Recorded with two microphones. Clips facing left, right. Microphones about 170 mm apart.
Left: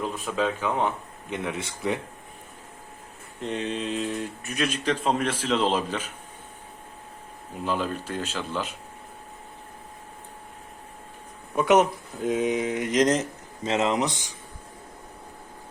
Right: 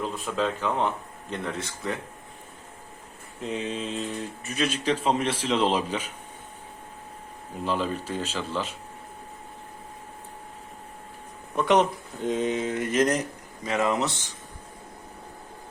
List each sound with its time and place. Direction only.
0.0 s a man's voice: 5° left (ahead or behind)
1.5 s speech: 20° left (ahead or behind)
3.4 s mantra: centre (ahead or behind)
4.8 s speech: 10° right (ahead or behind)
7.6 s mantra: 5° left (ahead or behind)
8.1 s speech: 10° left (ahead or behind)
11.5 s speech: 5° left (ahead or behind)